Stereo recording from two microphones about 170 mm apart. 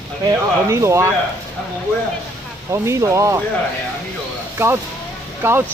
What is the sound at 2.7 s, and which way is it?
Speech, 15° right (ahead or behind).